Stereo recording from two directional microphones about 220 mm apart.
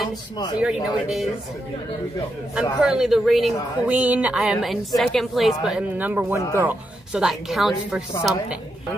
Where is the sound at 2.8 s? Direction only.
Centre (ahead or behind).